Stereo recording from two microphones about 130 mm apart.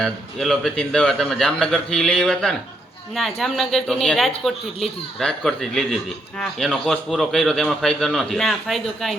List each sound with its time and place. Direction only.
0.0 s speech: 5° left (ahead or behind)